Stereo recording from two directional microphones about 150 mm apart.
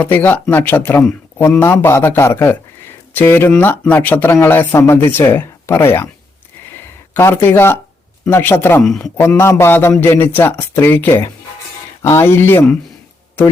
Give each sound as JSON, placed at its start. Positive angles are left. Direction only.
{"t": 0.0, "sound": "speech", "side_deg": 10}
{"t": 6.7, "sound": "a sound", "side_deg": 15}
{"t": 8.2, "sound": "speech", "side_deg": 15}